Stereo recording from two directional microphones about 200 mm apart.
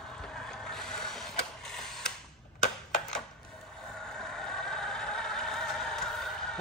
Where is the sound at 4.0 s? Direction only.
5° left (ahead or behind).